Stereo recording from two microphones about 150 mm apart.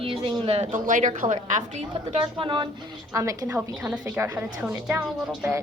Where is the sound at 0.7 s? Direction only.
60° right (ahead or behind).